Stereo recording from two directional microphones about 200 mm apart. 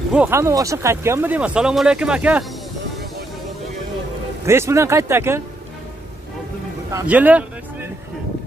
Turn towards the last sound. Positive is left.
turn(degrees=-5)  # may be behind; listen again after turning